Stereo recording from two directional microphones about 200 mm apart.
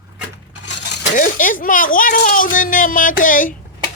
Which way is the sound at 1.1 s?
40° left (ahead or behind).